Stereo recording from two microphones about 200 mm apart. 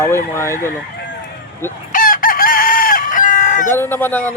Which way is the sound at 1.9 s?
45° left (ahead or behind).